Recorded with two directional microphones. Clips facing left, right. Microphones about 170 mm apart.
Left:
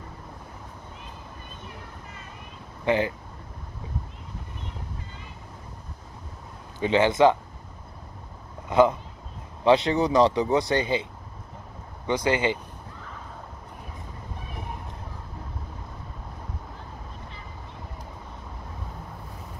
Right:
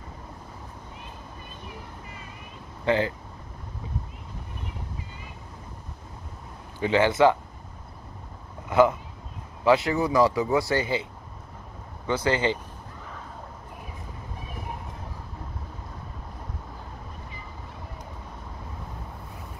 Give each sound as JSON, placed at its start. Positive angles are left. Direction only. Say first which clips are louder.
{"t": 2.8, "sound": "speech", "louder": "even", "side_deg": 15}
{"t": 6.8, "sound": "speech", "louder": "left 1 dB", "side_deg": 20}
{"t": 8.6, "sound": "a sound", "louder": "even", "side_deg": 20}
{"t": 9.7, "sound": "speech", "louder": "left 1 dB", "side_deg": 20}
{"t": 12.1, "sound": "speech", "louder": "left 1 dB", "side_deg": 15}